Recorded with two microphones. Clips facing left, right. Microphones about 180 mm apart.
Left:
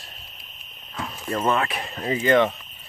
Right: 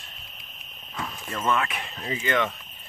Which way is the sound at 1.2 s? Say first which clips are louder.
Left 4 dB; 35° left (ahead or behind).